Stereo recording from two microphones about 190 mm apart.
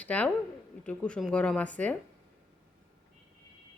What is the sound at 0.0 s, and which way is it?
A woman's voice, 5° left (ahead or behind).